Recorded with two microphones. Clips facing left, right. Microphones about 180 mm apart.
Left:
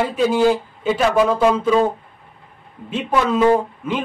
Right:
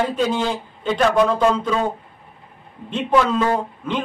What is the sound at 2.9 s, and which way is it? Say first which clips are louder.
A man's voice: right 1 dB; 10° left (ahead or behind).